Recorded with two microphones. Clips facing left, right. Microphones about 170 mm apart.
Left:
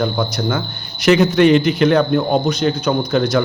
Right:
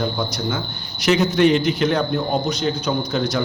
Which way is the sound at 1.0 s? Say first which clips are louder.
Left 4 dB; 65° left (ahead or behind).